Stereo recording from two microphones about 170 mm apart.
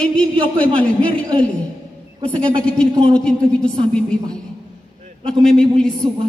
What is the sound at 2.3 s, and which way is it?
A man's voice, 5° left (ahead or behind).